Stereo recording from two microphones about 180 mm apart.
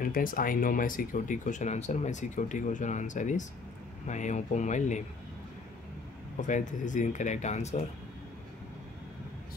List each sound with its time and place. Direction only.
0.0 s speech: 50° left (ahead or behind)
6.4 s speech: 45° left (ahead or behind)